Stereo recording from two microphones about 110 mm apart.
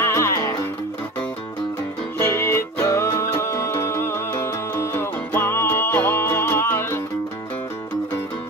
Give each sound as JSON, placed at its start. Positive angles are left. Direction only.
{"t": 0.0, "sound": "music", "side_deg": 25}
{"t": 2.1, "sound": "music", "side_deg": 25}